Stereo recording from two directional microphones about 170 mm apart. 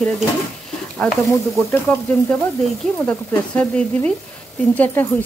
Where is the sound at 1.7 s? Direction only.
10° left (ahead or behind).